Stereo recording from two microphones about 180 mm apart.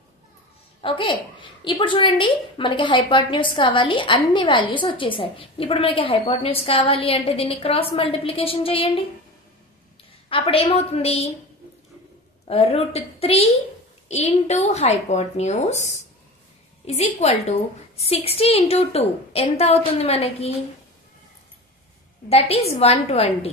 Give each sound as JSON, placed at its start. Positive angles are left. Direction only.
{"t": 0.8, "sound": "a woman's voice", "side_deg": 30}
{"t": 10.3, "sound": "a woman's voice", "side_deg": 30}
{"t": 12.4, "sound": "a woman's voice", "side_deg": 35}
{"t": 22.3, "sound": "a woman's voice", "side_deg": 35}